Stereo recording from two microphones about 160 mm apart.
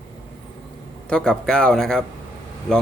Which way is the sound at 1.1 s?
5° left (ahead or behind).